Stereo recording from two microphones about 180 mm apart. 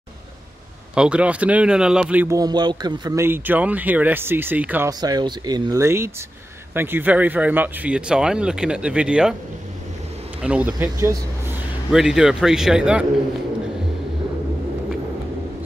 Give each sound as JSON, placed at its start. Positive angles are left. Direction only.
{"t": 0.9, "sound": "speech", "side_deg": -5}
{"t": 5.0, "sound": "speech", "side_deg": -20}
{"t": 10.4, "sound": "speech", "side_deg": -5}